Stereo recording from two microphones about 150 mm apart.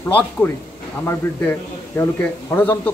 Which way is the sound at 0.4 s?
15° left (ahead or behind).